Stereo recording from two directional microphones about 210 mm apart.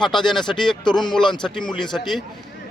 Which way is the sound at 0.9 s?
20° left (ahead or behind).